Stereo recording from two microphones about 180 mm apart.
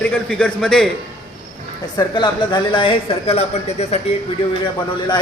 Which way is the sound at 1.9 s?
25° left (ahead or behind).